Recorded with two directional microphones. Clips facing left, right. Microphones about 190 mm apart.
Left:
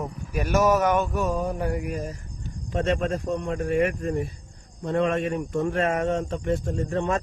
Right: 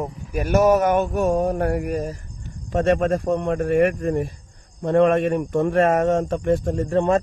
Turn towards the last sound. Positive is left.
turn(degrees=-40)  # may be behind; listen again after turning